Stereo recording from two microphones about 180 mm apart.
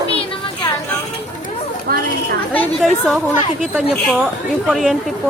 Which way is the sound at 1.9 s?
55° right (ahead or behind).